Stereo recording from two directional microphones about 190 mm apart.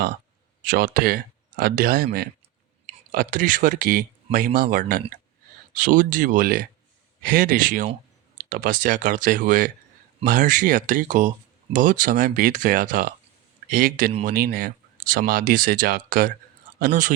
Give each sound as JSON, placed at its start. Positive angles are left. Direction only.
{"t": 0.6, "sound": "speech", "side_deg": -50}
{"t": 3.1, "sound": "speech", "side_deg": -45}